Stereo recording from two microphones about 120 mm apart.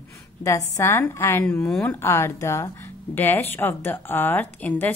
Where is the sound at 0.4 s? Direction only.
25° left (ahead or behind).